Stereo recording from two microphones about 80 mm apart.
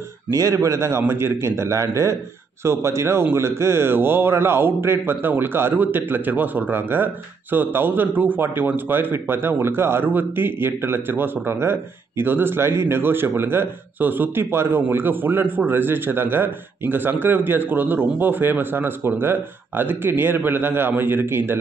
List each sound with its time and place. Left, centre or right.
0.3 s a man's voice: right